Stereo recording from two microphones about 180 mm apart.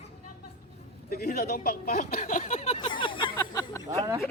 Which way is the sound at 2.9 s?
25° left (ahead or behind).